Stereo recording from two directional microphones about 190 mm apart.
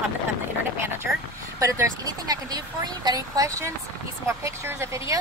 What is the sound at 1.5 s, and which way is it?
Speech, 15° right (ahead or behind).